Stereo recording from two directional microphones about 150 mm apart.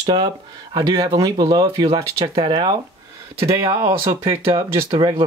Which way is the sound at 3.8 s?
30° right (ahead or behind).